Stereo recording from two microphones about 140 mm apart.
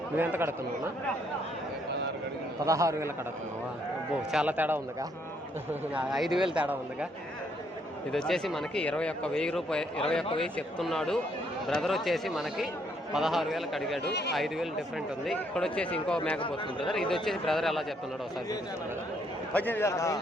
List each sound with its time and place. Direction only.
0.2 s speech: 15° right (ahead or behind)
2.6 s a man's voice: 20° right (ahead or behind)
4.3 s speech: 10° right (ahead or behind)
5.9 s speech: 5° right (ahead or behind)
8.1 s speech: centre (ahead or behind)
19.5 s a man's voice: 15° left (ahead or behind)